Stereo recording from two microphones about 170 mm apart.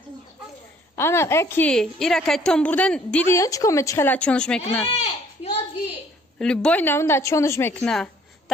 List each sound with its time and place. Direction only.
0.9 s a woman's voice: 15° left (ahead or behind)
3.3 s a woman's voice: 20° left (ahead or behind)
4.8 s speech: 40° left (ahead or behind)
6.3 s a woman's voice: 5° left (ahead or behind)
7.8 s a woman's voice: 5° left (ahead or behind)